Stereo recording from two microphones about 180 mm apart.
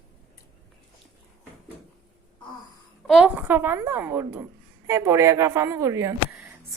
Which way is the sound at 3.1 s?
5° right (ahead or behind).